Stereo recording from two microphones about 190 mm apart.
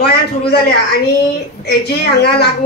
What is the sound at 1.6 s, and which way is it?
Speech, 55° left (ahead or behind).